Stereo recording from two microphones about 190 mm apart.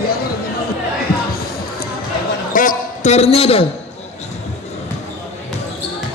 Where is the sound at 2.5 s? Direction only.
45° left (ahead or behind); by 3.7 s 30° left (ahead or behind).